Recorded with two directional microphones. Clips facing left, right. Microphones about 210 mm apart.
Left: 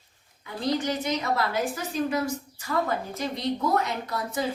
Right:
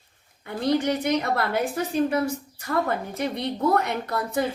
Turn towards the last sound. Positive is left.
turn(degrees=-60)  # may be behind; listen again after turning